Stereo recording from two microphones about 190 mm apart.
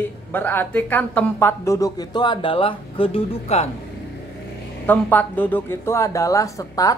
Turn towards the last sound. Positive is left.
turn(degrees=15)  # may be behind; listen again after turning